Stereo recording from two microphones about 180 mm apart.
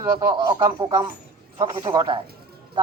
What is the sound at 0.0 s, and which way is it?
Speech, 25° right (ahead or behind).